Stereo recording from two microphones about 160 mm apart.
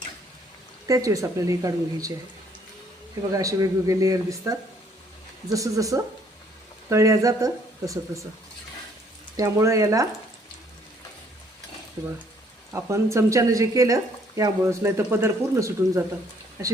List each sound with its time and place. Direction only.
0.9 s speech: 20° right (ahead or behind)
3.3 s speech: 20° right (ahead or behind)
9.3 s speech: 20° right (ahead or behind)
12.7 s speech: 15° right (ahead or behind)